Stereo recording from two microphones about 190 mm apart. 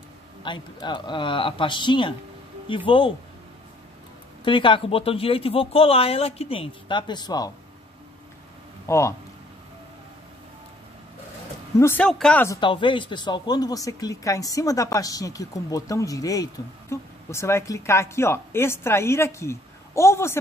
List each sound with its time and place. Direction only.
0.4 s speech: 25° left (ahead or behind)
4.5 s speech: 25° left (ahead or behind)
8.8 s speech: 15° left (ahead or behind)
11.8 s a woman's voice: 10° left (ahead or behind)
12.5 s a woman's voice: 25° left (ahead or behind)